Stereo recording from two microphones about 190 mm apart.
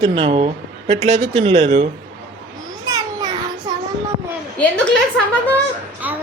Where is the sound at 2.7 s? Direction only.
20° right (ahead or behind).